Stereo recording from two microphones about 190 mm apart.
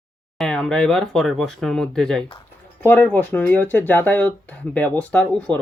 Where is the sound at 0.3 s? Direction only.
5° left (ahead or behind).